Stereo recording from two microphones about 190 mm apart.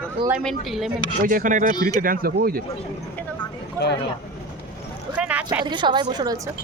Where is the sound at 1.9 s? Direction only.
50° right (ahead or behind).